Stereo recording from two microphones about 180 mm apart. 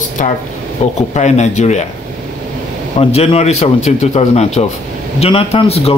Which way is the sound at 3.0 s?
35° left (ahead or behind).